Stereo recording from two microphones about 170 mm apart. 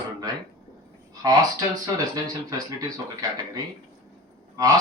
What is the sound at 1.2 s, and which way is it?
Speech, 20° right (ahead or behind).